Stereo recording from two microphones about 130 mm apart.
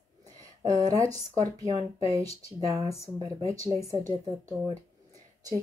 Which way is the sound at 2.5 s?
25° right (ahead or behind).